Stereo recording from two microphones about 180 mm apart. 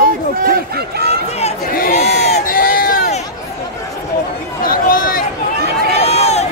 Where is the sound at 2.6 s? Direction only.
55° left (ahead or behind).